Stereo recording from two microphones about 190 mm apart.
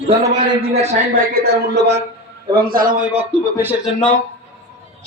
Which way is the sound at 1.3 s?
60° right (ahead or behind).